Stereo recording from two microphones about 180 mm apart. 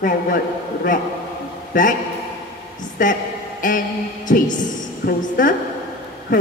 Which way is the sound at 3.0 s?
45° left (ahead or behind).